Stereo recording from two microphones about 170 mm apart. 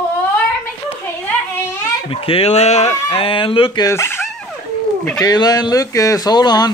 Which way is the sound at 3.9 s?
15° left (ahead or behind).